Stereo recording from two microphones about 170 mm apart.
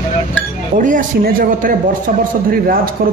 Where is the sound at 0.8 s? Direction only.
50° right (ahead or behind).